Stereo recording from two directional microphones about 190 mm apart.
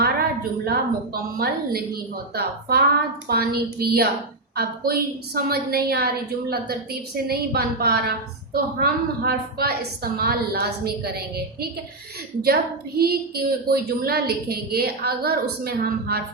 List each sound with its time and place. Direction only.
0.0 s a woman's voice: 55° right (ahead or behind)
7.3 s a woman's voice: 55° right (ahead or behind)
13.0 s a woman's voice: 55° right (ahead or behind)